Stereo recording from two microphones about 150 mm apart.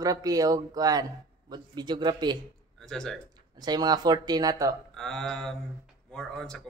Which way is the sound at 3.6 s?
25° right (ahead or behind).